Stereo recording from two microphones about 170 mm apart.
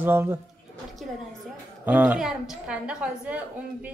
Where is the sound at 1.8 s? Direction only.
10° right (ahead or behind).